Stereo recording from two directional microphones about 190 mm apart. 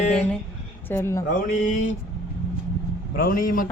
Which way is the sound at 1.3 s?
40° left (ahead or behind).